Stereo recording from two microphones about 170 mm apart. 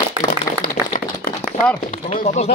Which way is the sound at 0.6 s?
55° left (ahead or behind).